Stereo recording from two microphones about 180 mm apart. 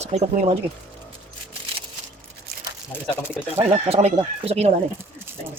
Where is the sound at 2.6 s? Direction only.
10° right (ahead or behind).